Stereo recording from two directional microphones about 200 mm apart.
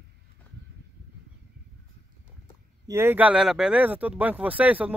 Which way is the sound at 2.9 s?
10° right (ahead or behind).